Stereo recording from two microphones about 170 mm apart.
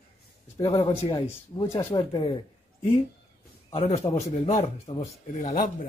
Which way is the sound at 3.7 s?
35° left (ahead or behind).